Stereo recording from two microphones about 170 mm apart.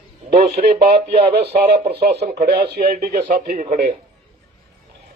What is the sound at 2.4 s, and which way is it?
Speech, 80° right.